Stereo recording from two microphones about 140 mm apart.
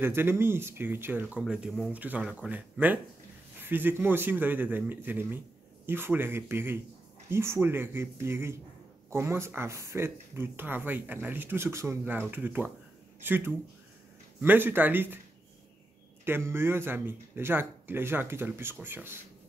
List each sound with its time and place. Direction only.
0.0 s speech: 15° right (ahead or behind)
16.3 s speech: 15° right (ahead or behind)